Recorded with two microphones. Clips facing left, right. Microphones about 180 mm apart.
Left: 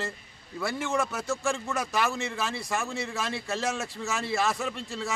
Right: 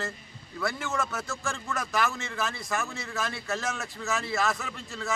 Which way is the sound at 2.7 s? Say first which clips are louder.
Left 2 dB; 25° left (ahead or behind).